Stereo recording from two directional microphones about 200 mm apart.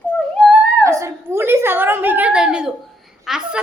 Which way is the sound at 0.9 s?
15° right (ahead or behind).